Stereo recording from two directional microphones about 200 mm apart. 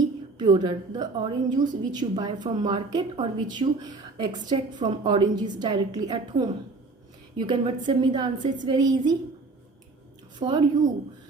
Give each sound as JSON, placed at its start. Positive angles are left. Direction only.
{"t": 0.3, "sound": "a woman's voice", "side_deg": -20}
{"t": 10.3, "sound": "a woman's voice", "side_deg": -20}